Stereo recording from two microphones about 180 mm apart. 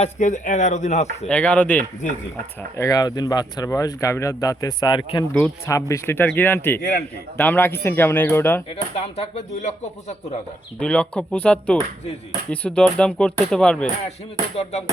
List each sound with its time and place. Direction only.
0.0 s speech: 45° left (ahead or behind)
1.3 s speech: 5° left (ahead or behind)
2.7 s speech: 20° left (ahead or behind)
5.3 s speech: 15° left (ahead or behind)
9.0 s speech: 35° left (ahead or behind)
10.8 s speech: 5° left (ahead or behind)
14.5 s speech: 35° left (ahead or behind)